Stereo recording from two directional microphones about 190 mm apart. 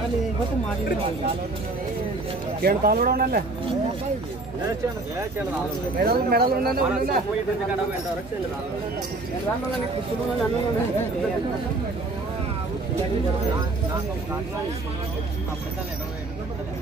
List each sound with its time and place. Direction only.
2.6 s speech: 50° right (ahead or behind)
5.9 s speech: 55° right (ahead or behind)